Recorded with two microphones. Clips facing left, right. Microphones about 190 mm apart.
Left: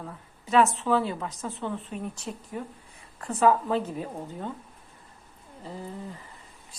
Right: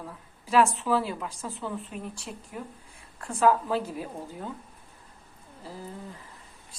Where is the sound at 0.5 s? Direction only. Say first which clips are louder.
Left 1 dB; centre (ahead or behind).